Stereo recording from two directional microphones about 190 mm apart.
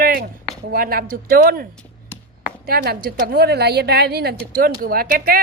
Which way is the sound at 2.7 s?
55° right (ahead or behind).